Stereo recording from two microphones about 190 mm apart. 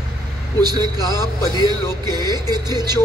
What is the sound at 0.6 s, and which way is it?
A man's voice, 20° right (ahead or behind).